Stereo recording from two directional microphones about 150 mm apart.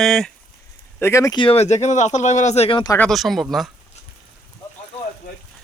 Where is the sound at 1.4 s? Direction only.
40° left (ahead or behind).